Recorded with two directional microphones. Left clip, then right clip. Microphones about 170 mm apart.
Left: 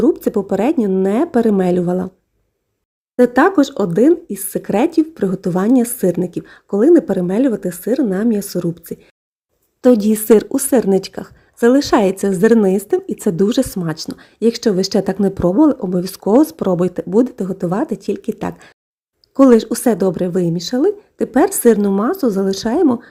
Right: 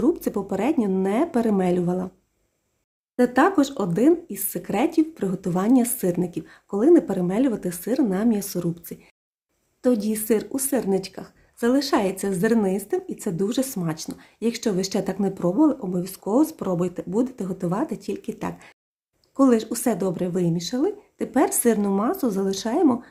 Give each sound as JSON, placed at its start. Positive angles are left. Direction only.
{"t": 0.0, "sound": "a woman's voice", "side_deg": 30}
{"t": 3.2, "sound": "a woman's voice", "side_deg": 35}
{"t": 9.8, "sound": "a woman's voice", "side_deg": 45}